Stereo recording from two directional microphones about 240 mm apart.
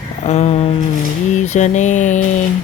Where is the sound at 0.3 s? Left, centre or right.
Left.